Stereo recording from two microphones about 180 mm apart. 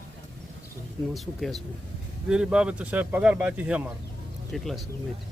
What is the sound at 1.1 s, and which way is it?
Speech, centre (ahead or behind).